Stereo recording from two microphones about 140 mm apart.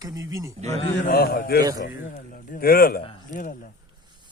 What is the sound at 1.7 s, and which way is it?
A man's voice, 80° left.